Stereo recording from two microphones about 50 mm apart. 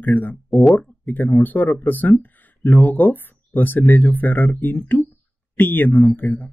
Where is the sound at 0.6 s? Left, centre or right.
Centre.